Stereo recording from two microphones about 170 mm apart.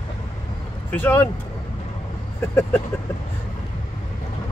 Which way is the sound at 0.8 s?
10° left (ahead or behind).